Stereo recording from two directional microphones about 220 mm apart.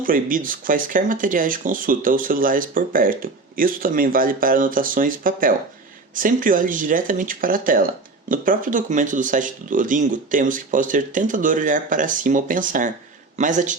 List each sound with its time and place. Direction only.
0.0 s speech: 40° right (ahead or behind)